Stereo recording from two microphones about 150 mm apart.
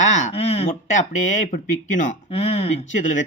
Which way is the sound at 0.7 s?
55° left (ahead or behind).